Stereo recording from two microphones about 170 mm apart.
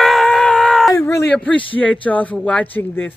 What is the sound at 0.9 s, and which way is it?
Speech, 15° left (ahead or behind).